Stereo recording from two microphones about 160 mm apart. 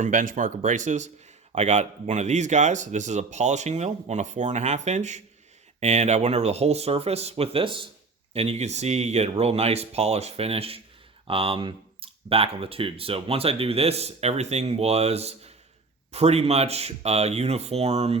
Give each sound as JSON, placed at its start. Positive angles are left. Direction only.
{"t": 0.0, "sound": "speech", "side_deg": -55}